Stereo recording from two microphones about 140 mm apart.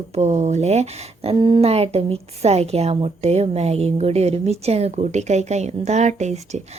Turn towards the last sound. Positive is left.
turn(degrees=-55)  # may be behind; listen again after turning